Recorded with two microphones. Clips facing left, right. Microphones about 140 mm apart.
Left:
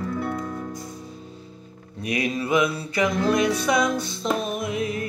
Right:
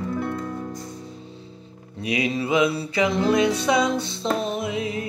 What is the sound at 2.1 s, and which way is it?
Music, 25° right (ahead or behind).